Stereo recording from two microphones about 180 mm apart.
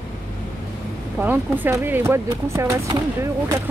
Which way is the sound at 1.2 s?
10° right (ahead or behind).